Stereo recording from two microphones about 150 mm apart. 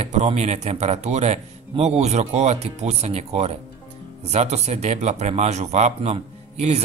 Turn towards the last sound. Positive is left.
turn(degrees=-45)  # may be behind; listen again after turning